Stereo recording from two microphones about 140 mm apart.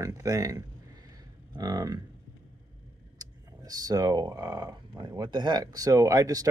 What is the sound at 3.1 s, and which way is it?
Speech, 30° right (ahead or behind).